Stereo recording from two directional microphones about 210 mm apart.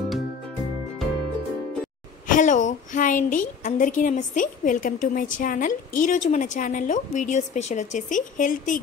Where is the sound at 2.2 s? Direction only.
35° left (ahead or behind).